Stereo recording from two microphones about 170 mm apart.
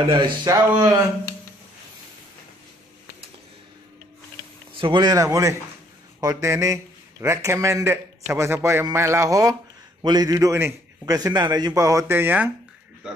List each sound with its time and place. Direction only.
0.1 s a man's voice: 25° right (ahead or behind)
4.7 s a man's voice: 30° right (ahead or behind); by 12.5 s 10° right (ahead or behind)